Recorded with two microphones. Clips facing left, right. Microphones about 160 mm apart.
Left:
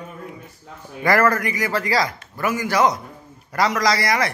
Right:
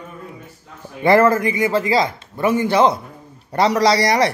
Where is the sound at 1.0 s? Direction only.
25° right (ahead or behind).